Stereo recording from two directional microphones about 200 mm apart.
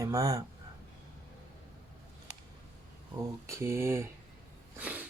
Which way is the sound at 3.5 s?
15° right (ahead or behind).